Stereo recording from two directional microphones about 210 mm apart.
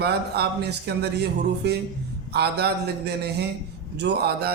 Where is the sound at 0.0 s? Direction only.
50° right (ahead or behind).